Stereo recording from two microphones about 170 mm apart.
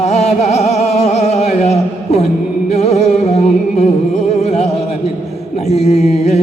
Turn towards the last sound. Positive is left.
turn(degrees=40)  # may be behind; listen again after turning